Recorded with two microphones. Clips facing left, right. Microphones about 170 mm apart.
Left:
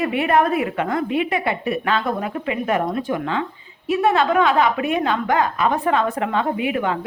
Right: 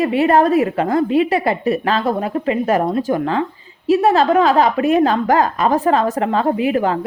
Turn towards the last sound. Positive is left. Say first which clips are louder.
# right 5 dB
turn(degrees=-35)  # may be behind; listen again after turning